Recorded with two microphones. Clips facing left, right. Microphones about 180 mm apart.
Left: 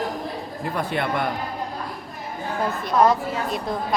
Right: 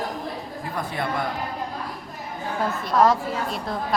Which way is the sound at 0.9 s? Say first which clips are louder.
Left 2 dB; 65° left (ahead or behind).